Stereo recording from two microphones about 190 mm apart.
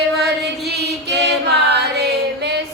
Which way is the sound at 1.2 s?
60° right (ahead or behind).